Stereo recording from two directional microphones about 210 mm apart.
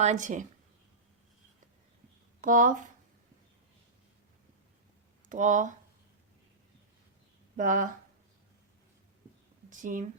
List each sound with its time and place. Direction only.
0.0 s speech: 35° right (ahead or behind)
2.4 s speech: 40° right (ahead or behind)
5.3 s speech: 35° right (ahead or behind)
7.5 s speech: 40° right (ahead or behind)
9.6 s speech: 40° right (ahead or behind)